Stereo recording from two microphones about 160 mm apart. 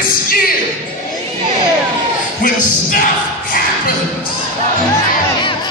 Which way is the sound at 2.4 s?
60° left (ahead or behind).